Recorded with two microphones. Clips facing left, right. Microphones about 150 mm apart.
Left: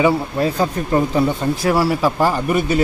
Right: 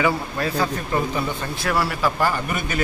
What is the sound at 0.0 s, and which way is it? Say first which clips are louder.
Speech: left 6 dB; 25° left (ahead or behind).